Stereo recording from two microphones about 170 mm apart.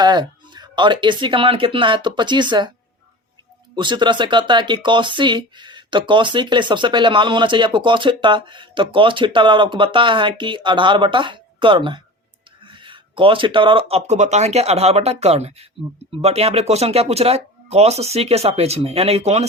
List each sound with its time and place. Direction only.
0.0 s speech: 25° right (ahead or behind)
3.8 s speech: 25° right (ahead or behind)